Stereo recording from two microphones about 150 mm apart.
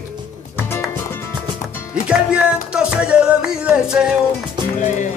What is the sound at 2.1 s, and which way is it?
Music, 5° right (ahead or behind).